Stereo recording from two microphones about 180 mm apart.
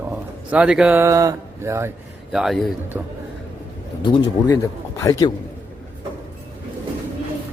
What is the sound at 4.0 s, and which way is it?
Speech, 25° left (ahead or behind).